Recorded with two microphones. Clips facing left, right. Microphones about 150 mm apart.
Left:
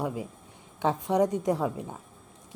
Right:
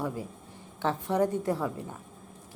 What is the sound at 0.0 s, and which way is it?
A woman's voice, 15° left (ahead or behind).